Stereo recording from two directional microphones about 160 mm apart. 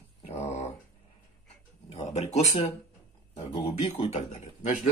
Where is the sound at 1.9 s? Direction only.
40° left (ahead or behind).